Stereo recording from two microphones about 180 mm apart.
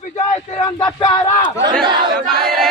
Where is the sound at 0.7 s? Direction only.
20° left (ahead or behind).